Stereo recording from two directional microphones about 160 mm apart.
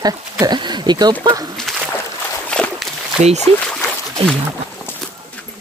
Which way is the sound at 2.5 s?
5° left (ahead or behind).